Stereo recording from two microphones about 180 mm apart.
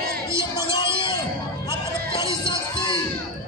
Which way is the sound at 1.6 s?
15° right (ahead or behind).